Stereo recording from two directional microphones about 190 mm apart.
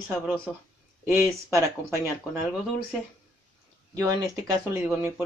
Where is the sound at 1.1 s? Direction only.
15° right (ahead or behind).